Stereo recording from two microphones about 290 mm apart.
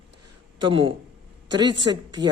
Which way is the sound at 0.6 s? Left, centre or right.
Centre.